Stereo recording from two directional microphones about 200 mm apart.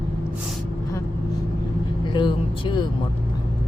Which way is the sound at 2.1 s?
25° left (ahead or behind).